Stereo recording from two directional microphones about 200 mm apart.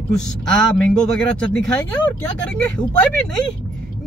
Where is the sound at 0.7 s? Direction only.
5° left (ahead or behind).